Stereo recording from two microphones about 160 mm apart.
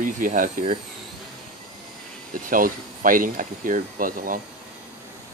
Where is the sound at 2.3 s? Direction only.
60° right (ahead or behind).